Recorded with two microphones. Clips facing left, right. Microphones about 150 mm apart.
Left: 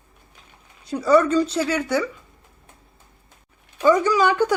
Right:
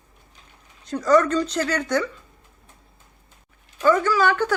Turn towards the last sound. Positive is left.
turn(degrees=15)  # may be behind; listen again after turning